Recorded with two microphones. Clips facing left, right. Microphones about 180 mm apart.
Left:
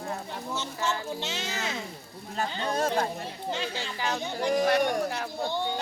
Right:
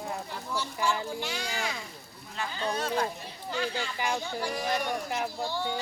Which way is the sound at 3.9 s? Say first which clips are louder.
Left 1 dB; 15° right (ahead or behind).